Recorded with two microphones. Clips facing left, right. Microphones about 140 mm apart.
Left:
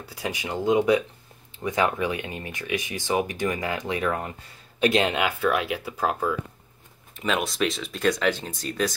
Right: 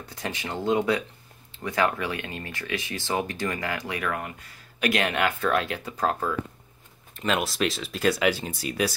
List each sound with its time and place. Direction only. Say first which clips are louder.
0.0 s speech: left 2 dB; 10° left (ahead or behind)
5.2 s speech: left 1 dB; 10° left (ahead or behind)
7.2 s speech: even; centre (ahead or behind)